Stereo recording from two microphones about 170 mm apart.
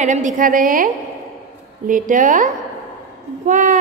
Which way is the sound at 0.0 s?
45° right (ahead or behind).